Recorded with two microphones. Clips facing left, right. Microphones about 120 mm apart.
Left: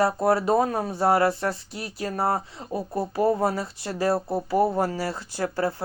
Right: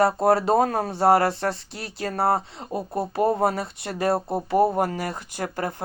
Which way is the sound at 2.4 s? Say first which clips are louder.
Right 1 dB; 20° right (ahead or behind).